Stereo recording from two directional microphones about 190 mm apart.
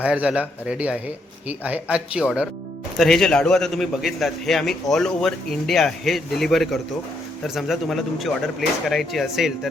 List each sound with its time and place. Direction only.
0.0 s a man's voice: 5° right (ahead or behind)